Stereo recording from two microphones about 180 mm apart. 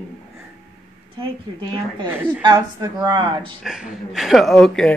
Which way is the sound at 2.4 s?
20° right (ahead or behind).